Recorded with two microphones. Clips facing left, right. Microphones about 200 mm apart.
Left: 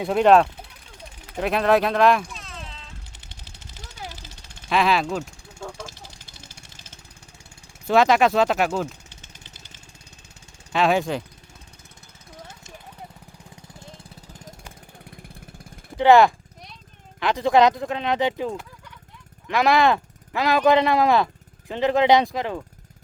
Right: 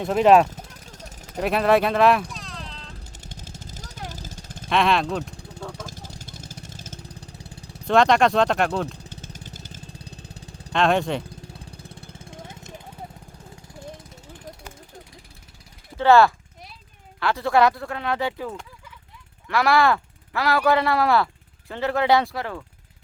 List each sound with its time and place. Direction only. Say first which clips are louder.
0.0 s speech: even; centre (ahead or behind)
0.5 s vehicle: right 3 dB; 40° right (ahead or behind)
1.4 s speech: even; centre (ahead or behind)
3.2 s vehicle: right 7 dB; 45° right (ahead or behind)
4.7 s speech: even; centre (ahead or behind)
5.3 s vehicle: right 1 dB; 35° right (ahead or behind)
7.9 s speech: even; 5° left (ahead or behind)
9.2 s vehicle: right 9 dB; 40° right (ahead or behind)
10.7 s speech: even; 5° left (ahead or behind)
11.6 s lawn mower: right 9 dB; 30° right (ahead or behind)
14.0 s vehicle: right 1 dB; 35° left (ahead or behind)
16.0 s speech: left 1 dB; 15° left (ahead or behind)